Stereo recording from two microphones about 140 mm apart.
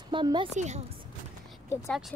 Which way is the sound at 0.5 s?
55° right (ahead or behind).